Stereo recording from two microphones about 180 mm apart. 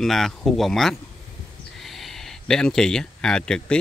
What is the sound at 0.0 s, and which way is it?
Speech, centre (ahead or behind).